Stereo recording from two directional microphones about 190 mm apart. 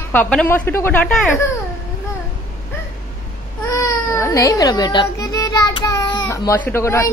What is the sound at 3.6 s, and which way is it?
Baby cry, 15° left (ahead or behind).